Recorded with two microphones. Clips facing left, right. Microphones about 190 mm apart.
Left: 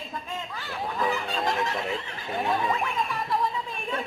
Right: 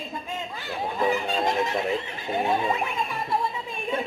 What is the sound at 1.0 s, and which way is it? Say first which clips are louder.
Music: right 4 dB; 20° right (ahead or behind).